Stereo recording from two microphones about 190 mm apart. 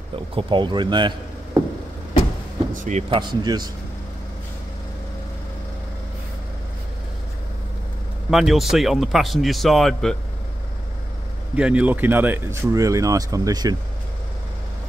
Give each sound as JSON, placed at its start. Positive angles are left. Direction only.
{"t": 0.4, "sound": "speech", "side_deg": -25}
{"t": 2.7, "sound": "speech", "side_deg": -40}
{"t": 3.2, "sound": "speech", "side_deg": -25}
{"t": 8.3, "sound": "speech", "side_deg": 0}
{"t": 11.5, "sound": "speech", "side_deg": -5}